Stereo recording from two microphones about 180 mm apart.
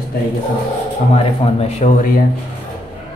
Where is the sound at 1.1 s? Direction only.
35° left (ahead or behind).